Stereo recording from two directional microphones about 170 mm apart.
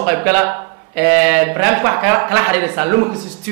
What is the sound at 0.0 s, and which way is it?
Speech, 15° right (ahead or behind).